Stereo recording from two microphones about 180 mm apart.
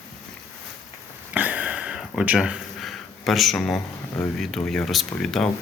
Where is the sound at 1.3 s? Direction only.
10° right (ahead or behind).